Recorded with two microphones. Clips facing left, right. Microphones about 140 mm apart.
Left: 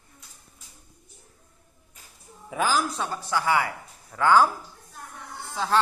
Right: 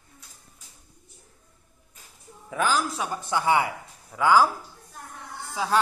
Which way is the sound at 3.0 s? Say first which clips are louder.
Even; 15° right (ahead or behind).